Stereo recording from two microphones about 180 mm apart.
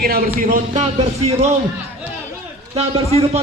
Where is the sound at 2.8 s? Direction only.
35° right (ahead or behind).